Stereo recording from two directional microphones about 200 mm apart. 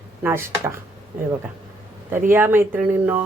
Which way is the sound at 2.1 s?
10° right (ahead or behind).